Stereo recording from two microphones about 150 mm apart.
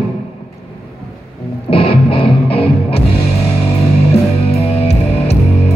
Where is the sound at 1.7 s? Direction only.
40° left (ahead or behind).